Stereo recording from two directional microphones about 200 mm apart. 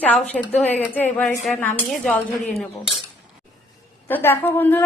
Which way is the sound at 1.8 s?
Centre (ahead or behind).